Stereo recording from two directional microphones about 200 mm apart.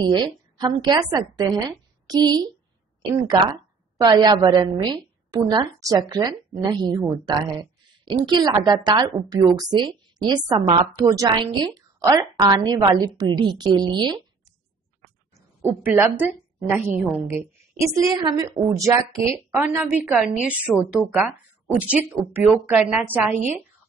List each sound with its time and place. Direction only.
0.0 s a woman's voice: 20° right (ahead or behind)
15.3 s a woman's voice: 10° right (ahead or behind)